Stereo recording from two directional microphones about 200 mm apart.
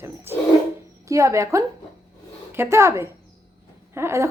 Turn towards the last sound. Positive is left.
turn(degrees=-15)  # may be behind; listen again after turning